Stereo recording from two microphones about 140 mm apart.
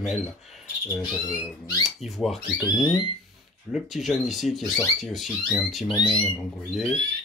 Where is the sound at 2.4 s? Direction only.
25° left (ahead or behind).